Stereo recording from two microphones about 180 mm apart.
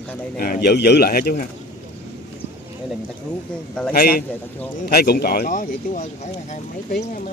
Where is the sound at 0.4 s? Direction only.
60° left (ahead or behind).